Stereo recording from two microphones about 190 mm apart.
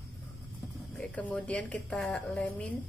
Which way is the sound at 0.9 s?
5° left (ahead or behind).